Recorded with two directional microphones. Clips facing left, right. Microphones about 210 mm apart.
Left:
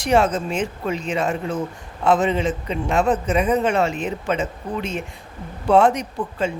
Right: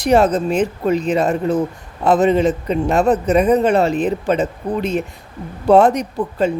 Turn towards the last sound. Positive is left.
turn(degrees=-40)  # may be behind; listen again after turning